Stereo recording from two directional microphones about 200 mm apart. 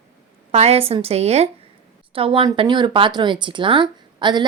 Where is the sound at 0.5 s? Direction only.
30° right (ahead or behind).